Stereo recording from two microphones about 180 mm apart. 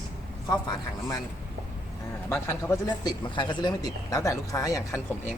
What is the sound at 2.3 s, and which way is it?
Speech, 15° left (ahead or behind).